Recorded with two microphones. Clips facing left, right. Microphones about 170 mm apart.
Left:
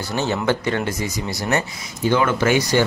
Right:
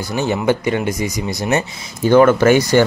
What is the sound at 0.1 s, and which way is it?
Speech, 15° right (ahead or behind).